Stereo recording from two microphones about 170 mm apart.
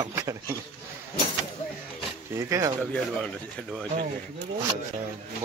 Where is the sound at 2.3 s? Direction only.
15° right (ahead or behind).